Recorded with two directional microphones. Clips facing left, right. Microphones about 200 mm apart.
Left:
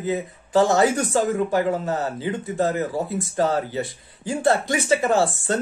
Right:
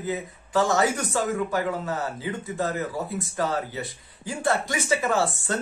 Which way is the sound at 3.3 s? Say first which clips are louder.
Left 6 dB; 30° left (ahead or behind).